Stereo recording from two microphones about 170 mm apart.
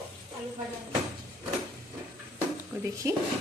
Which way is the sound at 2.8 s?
20° right (ahead or behind).